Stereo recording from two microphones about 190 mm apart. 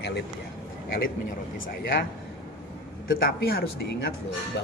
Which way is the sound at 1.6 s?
50° left (ahead or behind).